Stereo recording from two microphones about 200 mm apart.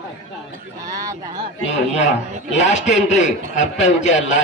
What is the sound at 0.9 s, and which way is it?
Speech, 20° right (ahead or behind).